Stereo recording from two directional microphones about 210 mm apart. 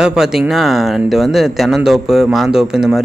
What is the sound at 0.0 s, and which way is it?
Speech, 5° right (ahead or behind).